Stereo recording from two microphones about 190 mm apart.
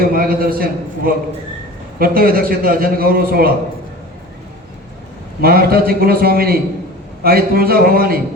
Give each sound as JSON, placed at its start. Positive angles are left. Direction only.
{"t": 0.0, "sound": "a man's voice", "side_deg": -50}
{"t": 5.4, "sound": "a man's voice", "side_deg": -50}